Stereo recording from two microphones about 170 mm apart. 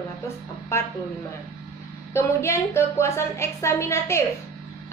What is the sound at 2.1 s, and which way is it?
A woman's voice, 15° left (ahead or behind).